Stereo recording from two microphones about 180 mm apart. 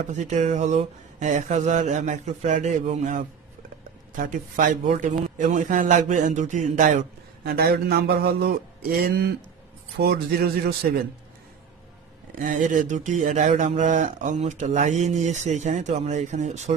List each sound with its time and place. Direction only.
0.1 s speech: 40° right (ahead or behind)
7.4 s a sound: 60° right (ahead or behind)
12.4 s speech: 45° right (ahead or behind)